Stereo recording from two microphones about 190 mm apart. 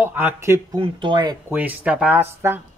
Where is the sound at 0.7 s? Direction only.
25° right (ahead or behind).